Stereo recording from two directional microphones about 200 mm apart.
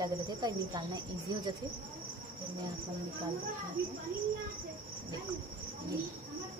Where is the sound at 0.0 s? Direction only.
20° right (ahead or behind).